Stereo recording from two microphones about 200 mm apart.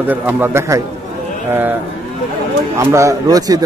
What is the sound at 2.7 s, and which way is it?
Speech, 15° right (ahead or behind).